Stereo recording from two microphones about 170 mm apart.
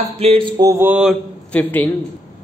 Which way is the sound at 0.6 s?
15° right (ahead or behind).